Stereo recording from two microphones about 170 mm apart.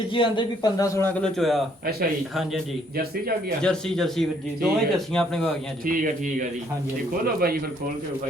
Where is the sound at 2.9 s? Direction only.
65° right (ahead or behind).